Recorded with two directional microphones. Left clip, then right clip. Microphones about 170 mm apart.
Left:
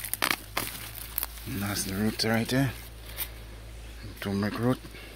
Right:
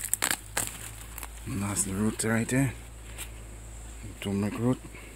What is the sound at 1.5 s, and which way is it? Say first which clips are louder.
Speech: even; 20° right (ahead or behind).